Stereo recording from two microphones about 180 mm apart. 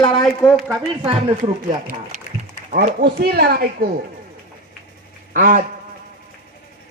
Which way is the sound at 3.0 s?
60° right (ahead or behind).